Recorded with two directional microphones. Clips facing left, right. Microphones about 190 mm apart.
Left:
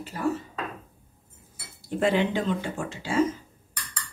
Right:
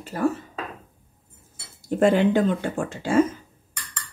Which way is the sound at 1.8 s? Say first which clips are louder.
Right 5 dB; 50° right (ahead or behind).